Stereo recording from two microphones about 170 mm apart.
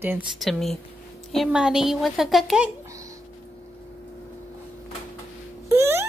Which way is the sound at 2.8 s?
20° right (ahead or behind).